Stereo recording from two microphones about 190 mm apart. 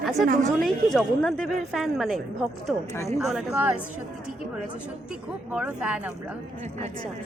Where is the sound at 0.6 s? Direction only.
Centre (ahead or behind).